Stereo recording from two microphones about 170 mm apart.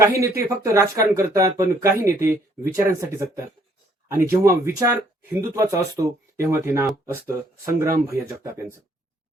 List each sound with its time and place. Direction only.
0.0 s speech: 15° right (ahead or behind)